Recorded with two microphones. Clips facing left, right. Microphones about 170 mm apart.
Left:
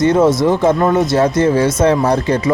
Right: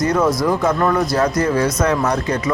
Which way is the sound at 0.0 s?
25° left (ahead or behind).